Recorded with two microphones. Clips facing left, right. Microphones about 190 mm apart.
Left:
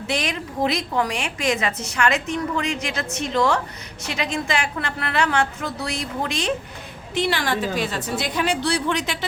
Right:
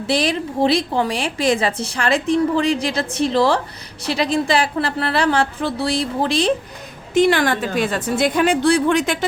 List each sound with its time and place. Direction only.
0.1 s a woman's voice: 35° right (ahead or behind)
7.1 s a woman's voice: 50° right (ahead or behind)